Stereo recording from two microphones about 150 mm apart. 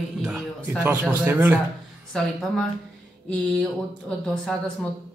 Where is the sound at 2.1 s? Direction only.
5° left (ahead or behind).